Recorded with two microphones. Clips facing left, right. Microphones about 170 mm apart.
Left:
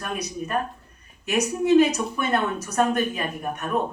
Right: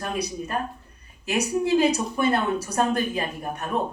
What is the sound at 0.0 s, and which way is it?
A man's voice, 30° right (ahead or behind).